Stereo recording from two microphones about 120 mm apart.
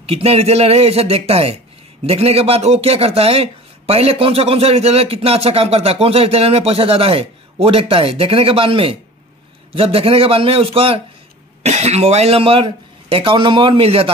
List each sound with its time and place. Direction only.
0.0 s speech: 55° right (ahead or behind)
11.6 s speech: 65° right (ahead or behind)